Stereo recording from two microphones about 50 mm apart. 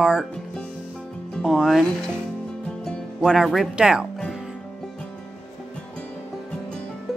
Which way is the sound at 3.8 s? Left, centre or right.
Centre.